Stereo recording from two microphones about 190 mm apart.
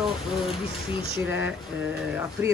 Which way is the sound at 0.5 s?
30° left (ahead or behind).